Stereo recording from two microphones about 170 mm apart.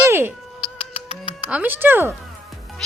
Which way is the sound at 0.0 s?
15° right (ahead or behind).